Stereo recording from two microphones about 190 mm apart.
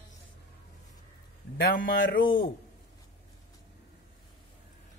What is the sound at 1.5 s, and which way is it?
Mantra, 50° left (ahead or behind).